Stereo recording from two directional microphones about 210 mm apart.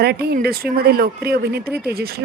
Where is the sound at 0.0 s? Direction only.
50° right (ahead or behind).